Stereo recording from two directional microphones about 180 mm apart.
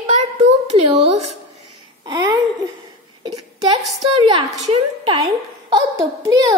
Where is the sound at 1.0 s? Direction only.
35° right (ahead or behind).